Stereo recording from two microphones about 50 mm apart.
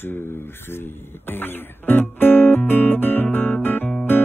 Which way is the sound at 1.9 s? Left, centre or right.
Left.